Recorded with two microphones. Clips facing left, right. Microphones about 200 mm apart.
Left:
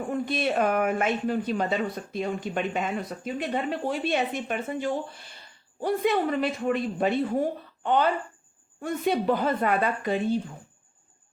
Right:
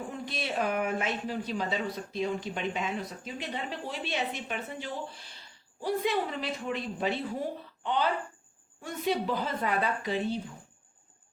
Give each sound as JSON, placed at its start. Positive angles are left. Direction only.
{"t": 0.1, "sound": "speech", "side_deg": 55}
{"t": 8.8, "sound": "a woman's voice", "side_deg": 55}